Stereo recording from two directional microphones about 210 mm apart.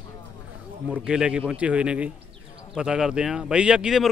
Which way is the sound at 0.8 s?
5° right (ahead or behind).